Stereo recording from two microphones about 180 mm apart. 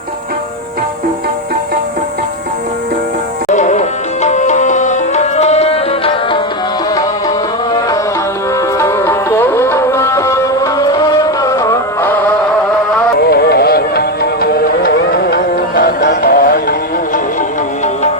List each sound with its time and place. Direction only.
3.5 s tabla: 40° left (ahead or behind)
8.8 s music: 15° left (ahead or behind)
13.1 s music: 65° left (ahead or behind)